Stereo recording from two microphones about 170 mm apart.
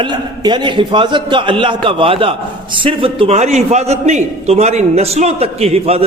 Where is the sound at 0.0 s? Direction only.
25° right (ahead or behind).